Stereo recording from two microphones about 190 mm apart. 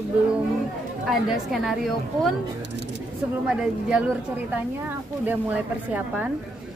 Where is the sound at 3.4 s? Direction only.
5° right (ahead or behind).